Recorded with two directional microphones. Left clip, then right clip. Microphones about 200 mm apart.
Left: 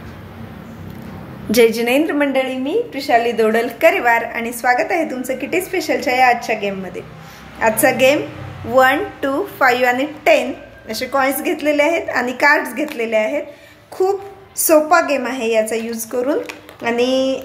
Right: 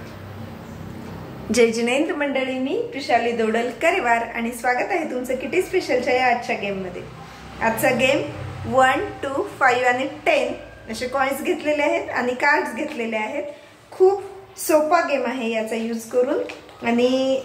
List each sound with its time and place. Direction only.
1.5 s a woman's voice: 40° left (ahead or behind)